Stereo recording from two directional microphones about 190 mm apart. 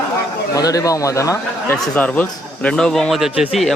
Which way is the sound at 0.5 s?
20° left (ahead or behind).